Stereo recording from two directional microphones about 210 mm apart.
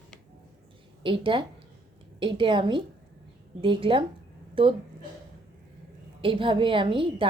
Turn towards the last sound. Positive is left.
turn(degrees=-25)  # may be behind; listen again after turning